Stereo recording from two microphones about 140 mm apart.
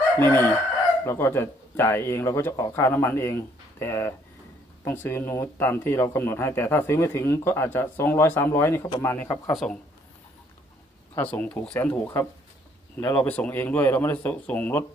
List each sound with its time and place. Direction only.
0.2 s speech: 15° left (ahead or behind)
9.6 s speech: 5° left (ahead or behind)
11.1 s speech: 10° left (ahead or behind)